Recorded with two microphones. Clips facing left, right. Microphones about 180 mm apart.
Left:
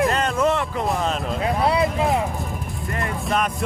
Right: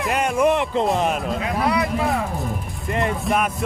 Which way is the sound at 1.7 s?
25° left (ahead or behind).